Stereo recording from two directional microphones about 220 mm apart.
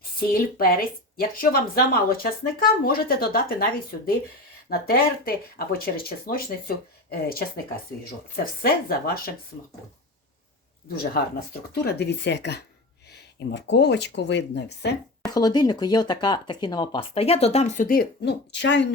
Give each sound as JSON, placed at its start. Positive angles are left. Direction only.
{"t": 0.2, "sound": "speech", "side_deg": 40}
{"t": 8.6, "sound": "speech", "side_deg": 45}
{"t": 10.8, "sound": "speech", "side_deg": 45}
{"t": 15.3, "sound": "speech", "side_deg": 20}